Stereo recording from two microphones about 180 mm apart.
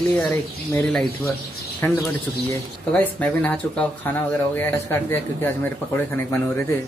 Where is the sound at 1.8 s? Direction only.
15° left (ahead or behind).